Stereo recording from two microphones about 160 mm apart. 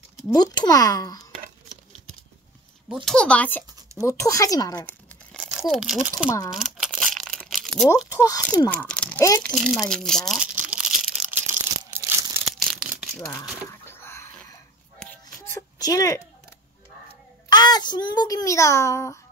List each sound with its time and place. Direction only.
0.3 s speech: 25° left (ahead or behind)
3.1 s speech: 5° left (ahead or behind); by 4.8 s 25° left (ahead or behind)
4.8 s crumpling: 5° left (ahead or behind)
8.1 s a sound: 20° left (ahead or behind)
8.6 s crunch: 10° left (ahead or behind)
9.4 s speech: 5° left (ahead or behind)
10.7 s a sound: 10° right (ahead or behind)
11.9 s crumpling: 15° right (ahead or behind)
12.5 s a sound: centre (ahead or behind)
13.0 s crumpling: 5° left (ahead or behind)
13.7 s rowboat: 15° left (ahead or behind)
15.0 s a sound: 15° left (ahead or behind)
17.5 s a child's voice: 25° left (ahead or behind)